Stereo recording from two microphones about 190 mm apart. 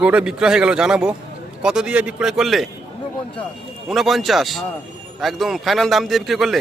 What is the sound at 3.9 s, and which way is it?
Speech, centre (ahead or behind).